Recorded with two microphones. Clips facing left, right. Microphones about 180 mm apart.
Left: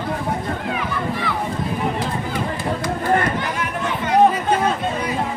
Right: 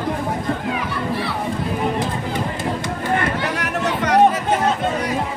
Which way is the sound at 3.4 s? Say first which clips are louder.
Right 2 dB; 80° right.